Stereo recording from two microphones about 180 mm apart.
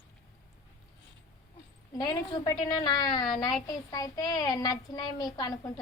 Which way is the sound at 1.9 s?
25° left (ahead or behind).